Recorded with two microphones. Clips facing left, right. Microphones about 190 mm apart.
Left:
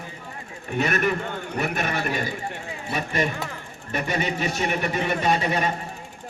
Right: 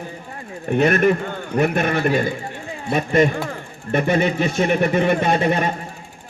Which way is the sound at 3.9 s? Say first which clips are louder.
Right 8 dB; 50° right (ahead or behind).